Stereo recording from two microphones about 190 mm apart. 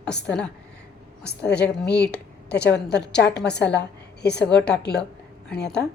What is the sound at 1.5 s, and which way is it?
A woman's voice, 60° left (ahead or behind).